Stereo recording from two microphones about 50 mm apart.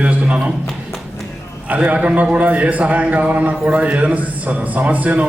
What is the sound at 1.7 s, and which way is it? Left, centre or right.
A man's voice, right.